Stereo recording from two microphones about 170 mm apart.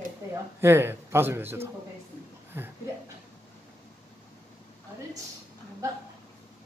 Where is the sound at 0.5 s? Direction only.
15° right (ahead or behind).